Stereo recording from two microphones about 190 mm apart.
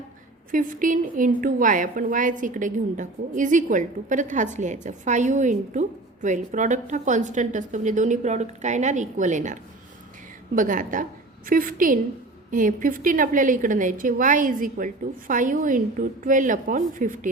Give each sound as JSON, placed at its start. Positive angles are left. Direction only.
{"t": 0.5, "sound": "a woman's voice", "side_deg": -45}